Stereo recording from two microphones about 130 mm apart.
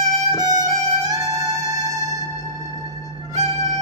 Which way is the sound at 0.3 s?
30° right (ahead or behind).